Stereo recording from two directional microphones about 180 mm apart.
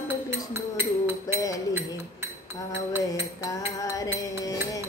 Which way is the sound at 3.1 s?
20° left (ahead or behind).